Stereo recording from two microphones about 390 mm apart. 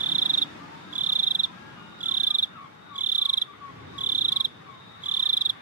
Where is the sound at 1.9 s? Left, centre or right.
Centre.